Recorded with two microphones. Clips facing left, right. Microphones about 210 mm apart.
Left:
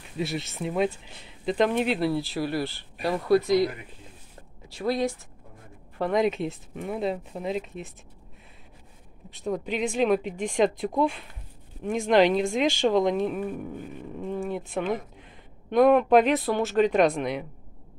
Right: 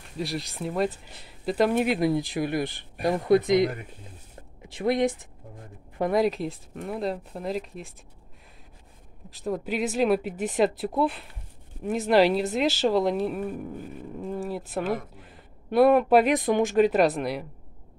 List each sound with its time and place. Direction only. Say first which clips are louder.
0.2 s speech: left 1 dB; centre (ahead or behind); by 5.1 s 20° right (ahead or behind)
5.9 s speech: right 1 dB; 10° right (ahead or behind)
9.3 s speech: even; centre (ahead or behind)